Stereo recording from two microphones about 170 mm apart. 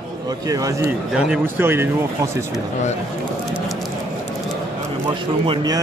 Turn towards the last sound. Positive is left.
turn(degrees=-25)  # may be behind; listen again after turning